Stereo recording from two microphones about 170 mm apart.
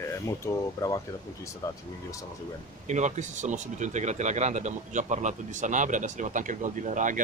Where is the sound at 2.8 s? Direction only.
45° right (ahead or behind).